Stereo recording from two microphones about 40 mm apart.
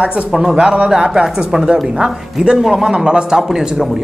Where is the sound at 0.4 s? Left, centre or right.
Centre.